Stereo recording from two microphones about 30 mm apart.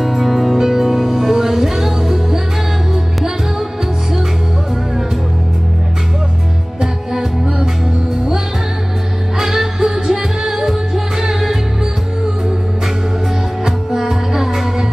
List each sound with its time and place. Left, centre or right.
0.0 s music: centre
6.8 s music: centre
9.4 s music: centre
13.7 s music: centre